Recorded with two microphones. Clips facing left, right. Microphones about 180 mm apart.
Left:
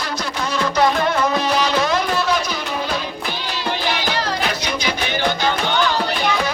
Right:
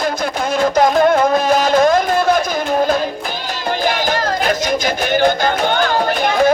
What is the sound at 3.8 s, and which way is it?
Music, 45° right (ahead or behind).